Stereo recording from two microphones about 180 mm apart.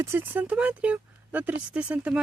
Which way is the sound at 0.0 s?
15° right (ahead or behind).